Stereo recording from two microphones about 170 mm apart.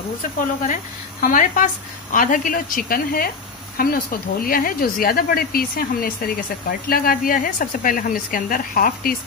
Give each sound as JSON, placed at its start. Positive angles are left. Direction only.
{"t": 1.2, "sound": "a woman's voice", "side_deg": 50}